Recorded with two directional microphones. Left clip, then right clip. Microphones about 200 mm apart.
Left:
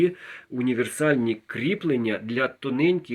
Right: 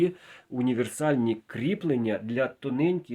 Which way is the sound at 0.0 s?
50° right (ahead or behind).